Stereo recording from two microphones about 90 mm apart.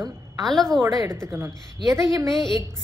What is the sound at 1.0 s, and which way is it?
A woman's voice, 30° right (ahead or behind).